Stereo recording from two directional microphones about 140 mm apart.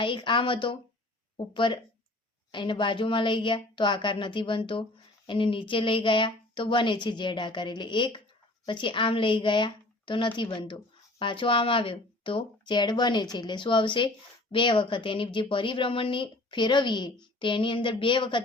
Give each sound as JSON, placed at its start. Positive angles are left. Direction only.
{"t": 0.0, "sound": "a woman's voice", "side_deg": 35}